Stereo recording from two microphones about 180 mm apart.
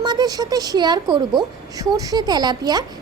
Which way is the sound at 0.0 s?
25° right (ahead or behind).